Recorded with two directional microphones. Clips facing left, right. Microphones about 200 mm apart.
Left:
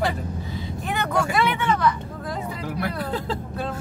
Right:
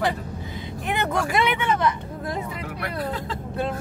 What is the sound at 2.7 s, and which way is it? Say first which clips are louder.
Speech: left 1 dB; 30° left (ahead or behind).